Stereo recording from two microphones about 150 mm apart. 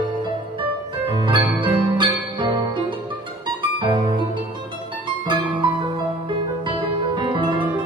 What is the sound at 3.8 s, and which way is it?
Music, 35° right (ahead or behind).